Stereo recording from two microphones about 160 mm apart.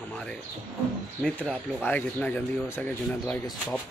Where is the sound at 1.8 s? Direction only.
10° left (ahead or behind).